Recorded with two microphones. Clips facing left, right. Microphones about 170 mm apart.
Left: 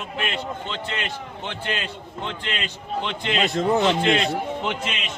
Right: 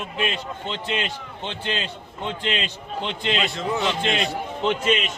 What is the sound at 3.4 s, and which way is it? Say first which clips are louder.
Speech: left 9 dB; 45° left (ahead or behind).